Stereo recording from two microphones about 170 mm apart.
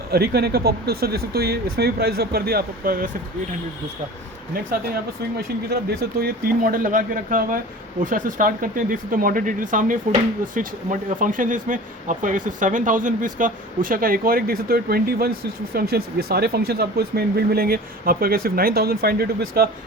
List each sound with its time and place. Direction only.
0.1 s speech: 70° right (ahead or behind)
5.4 s speech: 65° right (ahead or behind)
11.2 s speech: 50° right (ahead or behind)